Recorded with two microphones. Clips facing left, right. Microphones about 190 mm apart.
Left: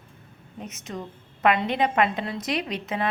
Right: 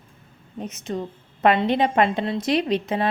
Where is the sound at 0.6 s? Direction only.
30° right (ahead or behind).